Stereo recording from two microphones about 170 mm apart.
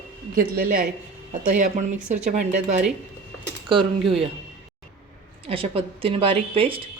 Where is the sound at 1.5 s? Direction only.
45° right (ahead or behind).